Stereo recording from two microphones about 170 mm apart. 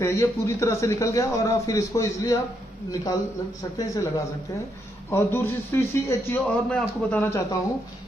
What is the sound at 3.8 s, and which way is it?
A man's voice, 20° left (ahead or behind).